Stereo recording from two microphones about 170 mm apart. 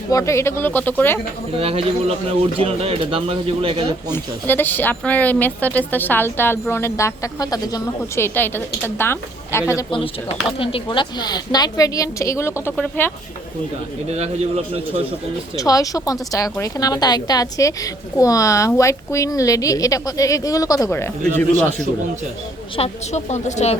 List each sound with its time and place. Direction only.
0.1 s speech: 20° left (ahead or behind)
1.5 s speech: 35° right (ahead or behind)
4.1 s speech: 10° left (ahead or behind)
9.9 s speech: 30° left (ahead or behind); by 13.1 s 10° left (ahead or behind)
14.1 s speech: 40° right (ahead or behind)
15.5 s speech: 20° left (ahead or behind)
22.8 s a woman's voice: 40° left (ahead or behind)